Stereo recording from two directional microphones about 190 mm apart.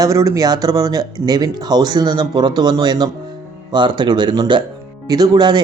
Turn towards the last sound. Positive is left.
turn(degrees=-25)  # may be behind; listen again after turning